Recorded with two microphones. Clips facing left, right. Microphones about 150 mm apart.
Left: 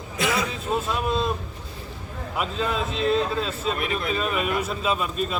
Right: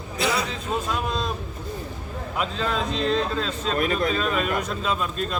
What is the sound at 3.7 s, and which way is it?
Speech, 45° right (ahead or behind).